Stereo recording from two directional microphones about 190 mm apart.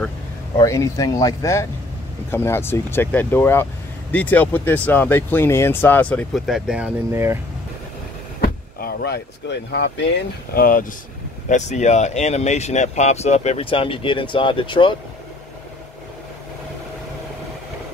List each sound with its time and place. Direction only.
0.6 s speech: 15° left (ahead or behind); by 7.3 s 15° right (ahead or behind)
8.4 s speech: 55° left (ahead or behind); by 15.0 s 25° left (ahead or behind)